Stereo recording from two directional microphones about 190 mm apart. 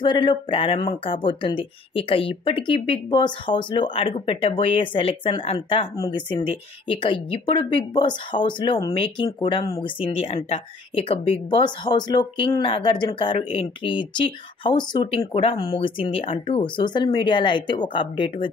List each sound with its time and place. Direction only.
0.0 s speech: 25° left (ahead or behind)